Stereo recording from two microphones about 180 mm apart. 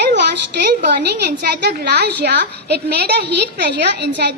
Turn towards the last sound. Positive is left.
turn(degrees=-70)  # may be behind; listen again after turning